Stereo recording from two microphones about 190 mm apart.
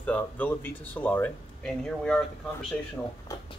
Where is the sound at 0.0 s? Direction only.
10° left (ahead or behind).